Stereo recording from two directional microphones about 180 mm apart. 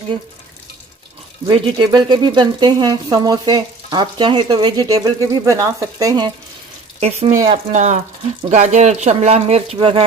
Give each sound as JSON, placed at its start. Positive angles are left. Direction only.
{"t": 1.5, "sound": "speech", "side_deg": -25}
{"t": 7.0, "sound": "speech", "side_deg": -35}